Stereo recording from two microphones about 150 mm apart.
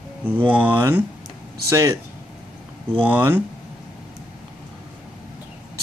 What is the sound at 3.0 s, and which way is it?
Speech, 15° right (ahead or behind).